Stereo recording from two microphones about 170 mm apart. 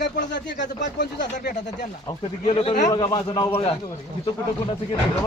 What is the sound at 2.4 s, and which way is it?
A man's voice, 30° left (ahead or behind).